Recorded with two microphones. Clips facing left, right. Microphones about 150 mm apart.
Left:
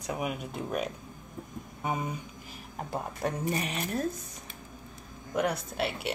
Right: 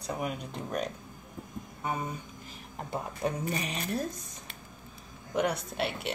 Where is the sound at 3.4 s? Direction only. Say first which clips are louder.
Left 2 dB; 5° left (ahead or behind).